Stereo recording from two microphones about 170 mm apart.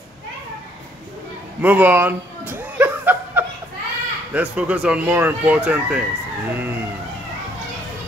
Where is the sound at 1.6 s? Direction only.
10° right (ahead or behind).